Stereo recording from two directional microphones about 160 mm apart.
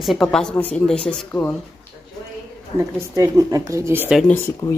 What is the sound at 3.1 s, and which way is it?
Speech, 20° right (ahead or behind).